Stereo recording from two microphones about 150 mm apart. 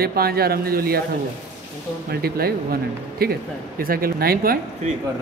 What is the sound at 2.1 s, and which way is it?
Speech, 90° right.